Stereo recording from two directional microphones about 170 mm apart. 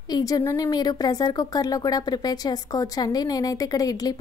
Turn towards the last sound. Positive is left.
turn(degrees=20)  # may be behind; listen again after turning